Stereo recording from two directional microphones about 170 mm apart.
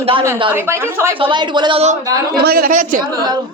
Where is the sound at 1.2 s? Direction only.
30° right (ahead or behind).